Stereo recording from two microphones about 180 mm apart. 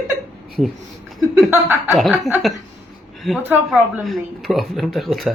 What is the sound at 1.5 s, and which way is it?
Speech, 10° right (ahead or behind).